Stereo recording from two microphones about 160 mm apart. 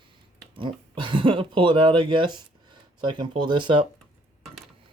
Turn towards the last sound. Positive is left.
turn(degrees=-30)  # may be behind; listen again after turning